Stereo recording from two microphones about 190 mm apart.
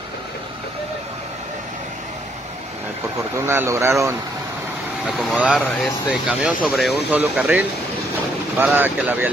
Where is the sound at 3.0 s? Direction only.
15° right (ahead or behind).